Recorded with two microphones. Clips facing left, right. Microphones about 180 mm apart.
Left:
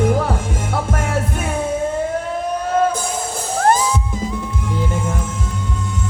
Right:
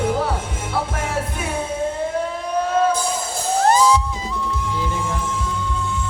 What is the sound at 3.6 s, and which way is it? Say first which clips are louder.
Music: right 1 dB; 50° left (ahead or behind).